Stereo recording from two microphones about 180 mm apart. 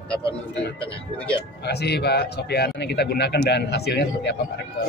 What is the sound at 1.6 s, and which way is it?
Speech, 65° left (ahead or behind).